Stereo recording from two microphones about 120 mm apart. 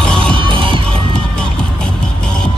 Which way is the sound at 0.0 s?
10° left (ahead or behind).